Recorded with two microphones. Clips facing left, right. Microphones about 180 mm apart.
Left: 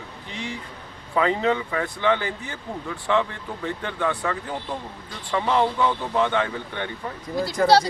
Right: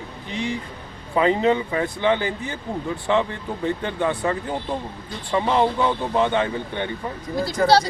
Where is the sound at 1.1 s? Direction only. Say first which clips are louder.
Right 3 dB; 20° right (ahead or behind).